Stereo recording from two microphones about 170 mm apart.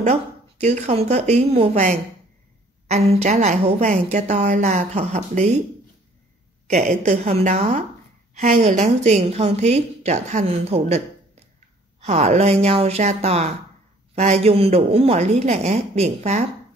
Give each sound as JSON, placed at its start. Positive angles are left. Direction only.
{"t": 0.0, "sound": "a woman's voice", "side_deg": -40}
{"t": 6.7, "sound": "a woman's voice", "side_deg": -40}